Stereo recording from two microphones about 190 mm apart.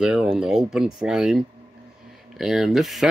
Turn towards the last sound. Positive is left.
turn(degrees=0)  # may be behind; listen again after turning